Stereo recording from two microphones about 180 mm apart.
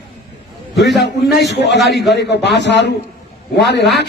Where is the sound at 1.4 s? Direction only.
75° left (ahead or behind).